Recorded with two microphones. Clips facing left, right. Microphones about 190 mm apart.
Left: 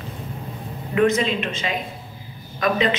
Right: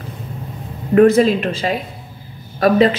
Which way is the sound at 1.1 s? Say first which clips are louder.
Right 8 dB; 40° right (ahead or behind).